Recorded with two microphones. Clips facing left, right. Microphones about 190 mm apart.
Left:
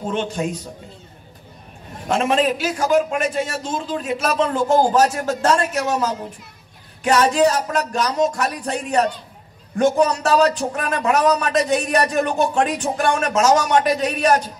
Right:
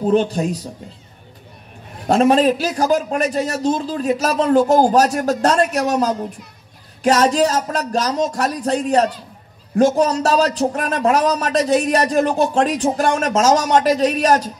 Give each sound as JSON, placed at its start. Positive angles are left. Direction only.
{"t": 0.1, "sound": "speech", "side_deg": -35}
{"t": 2.0, "sound": "speech", "side_deg": -35}